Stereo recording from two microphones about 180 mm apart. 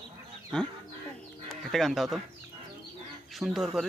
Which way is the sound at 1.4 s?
Centre (ahead or behind).